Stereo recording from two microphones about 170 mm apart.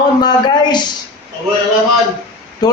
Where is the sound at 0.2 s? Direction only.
25° left (ahead or behind).